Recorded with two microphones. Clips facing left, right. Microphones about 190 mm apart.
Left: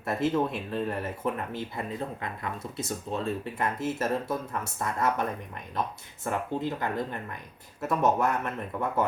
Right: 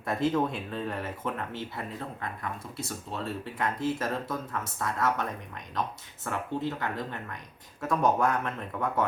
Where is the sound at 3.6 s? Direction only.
5° left (ahead or behind).